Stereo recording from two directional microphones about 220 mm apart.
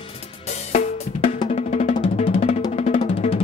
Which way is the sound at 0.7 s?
30° left (ahead or behind).